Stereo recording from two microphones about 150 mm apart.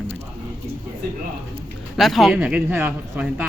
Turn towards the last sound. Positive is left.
turn(degrees=-10)  # may be behind; listen again after turning